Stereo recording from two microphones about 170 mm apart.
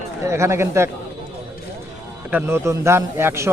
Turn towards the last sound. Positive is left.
turn(degrees=-15)  # may be behind; listen again after turning